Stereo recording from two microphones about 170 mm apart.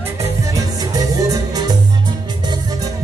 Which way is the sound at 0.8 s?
20° right (ahead or behind).